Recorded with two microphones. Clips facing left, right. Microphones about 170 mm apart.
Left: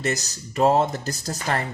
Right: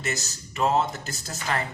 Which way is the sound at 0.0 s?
35° left (ahead or behind).